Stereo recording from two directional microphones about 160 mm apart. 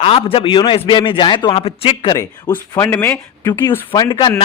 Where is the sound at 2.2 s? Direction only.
15° left (ahead or behind).